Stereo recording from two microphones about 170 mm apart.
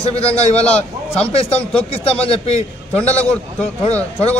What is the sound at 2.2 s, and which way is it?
Speech, 35° left (ahead or behind).